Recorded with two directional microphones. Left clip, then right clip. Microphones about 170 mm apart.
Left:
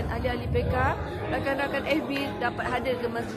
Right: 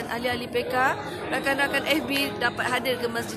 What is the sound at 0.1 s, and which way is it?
A woman's voice, 20° right (ahead or behind).